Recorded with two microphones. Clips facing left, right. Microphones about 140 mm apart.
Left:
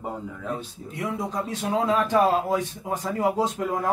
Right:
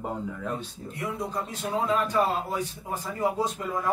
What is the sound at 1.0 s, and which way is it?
A man's voice, 90° left.